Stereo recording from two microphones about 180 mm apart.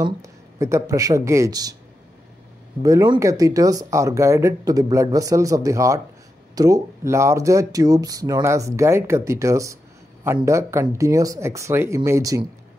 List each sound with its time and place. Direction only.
0.0 s speech: 15° right (ahead or behind)
2.8 s speech: 20° right (ahead or behind)